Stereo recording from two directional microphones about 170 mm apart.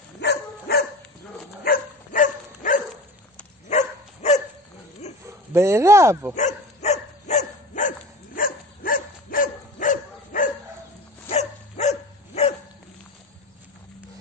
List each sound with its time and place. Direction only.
0.2 s dog: 75° left (ahead or behind)
1.6 s dog: 55° left (ahead or behind)
5.0 s a sound: 40° left (ahead or behind)
5.5 s speech: 15° right (ahead or behind)
6.3 s dog: 40° left (ahead or behind)
8.4 s dog: 55° left (ahead or behind); by 12.5 s 40° left (ahead or behind)